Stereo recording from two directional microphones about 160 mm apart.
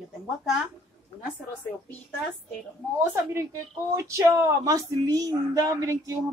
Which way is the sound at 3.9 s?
20° right (ahead or behind).